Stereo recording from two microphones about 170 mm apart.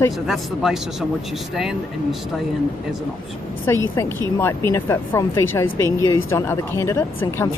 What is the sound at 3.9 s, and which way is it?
A woman's voice, 15° left (ahead or behind).